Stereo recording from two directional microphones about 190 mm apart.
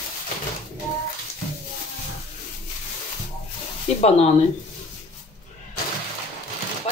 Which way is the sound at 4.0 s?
35° left (ahead or behind).